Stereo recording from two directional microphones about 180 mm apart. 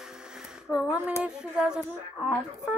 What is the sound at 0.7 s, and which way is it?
Speech, 5° right (ahead or behind).